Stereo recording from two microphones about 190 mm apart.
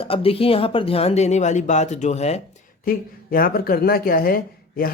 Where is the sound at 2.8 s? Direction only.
50° left (ahead or behind).